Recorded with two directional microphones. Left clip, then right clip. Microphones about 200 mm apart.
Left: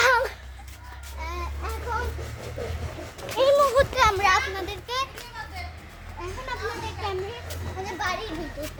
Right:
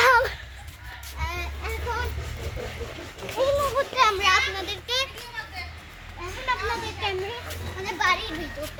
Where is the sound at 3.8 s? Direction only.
55° left (ahead or behind).